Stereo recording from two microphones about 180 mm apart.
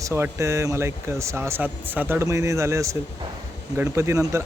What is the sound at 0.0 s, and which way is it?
A man's voice, 15° right (ahead or behind).